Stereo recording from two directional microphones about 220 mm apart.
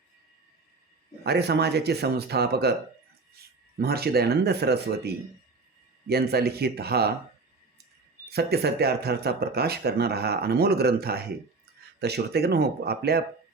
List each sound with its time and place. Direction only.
1.2 s speech: 50° right (ahead or behind)
3.8 s speech: 45° right (ahead or behind)
8.3 s speech: 45° right (ahead or behind)